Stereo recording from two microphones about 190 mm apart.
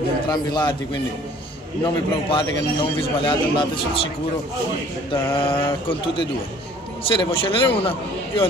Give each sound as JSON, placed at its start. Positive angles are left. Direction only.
{"t": 0.3, "sound": "a man's voice", "side_deg": 20}
{"t": 5.1, "sound": "a man's voice", "side_deg": 30}